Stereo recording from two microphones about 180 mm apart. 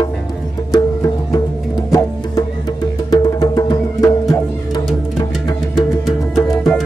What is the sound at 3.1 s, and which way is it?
Music, 20° left (ahead or behind).